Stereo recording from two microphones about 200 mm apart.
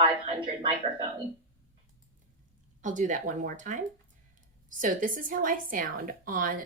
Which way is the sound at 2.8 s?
40° right (ahead or behind).